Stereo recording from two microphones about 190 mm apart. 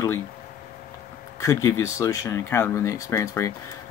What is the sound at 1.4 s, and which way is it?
Speech, 15° left (ahead or behind).